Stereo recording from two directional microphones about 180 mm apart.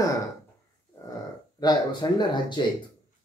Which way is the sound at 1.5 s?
20° left (ahead or behind).